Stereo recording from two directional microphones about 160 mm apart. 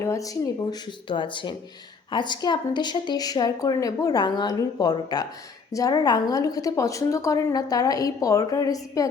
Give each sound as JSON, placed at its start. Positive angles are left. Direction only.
{"t": 0.0, "sound": "a woman's voice", "side_deg": 20}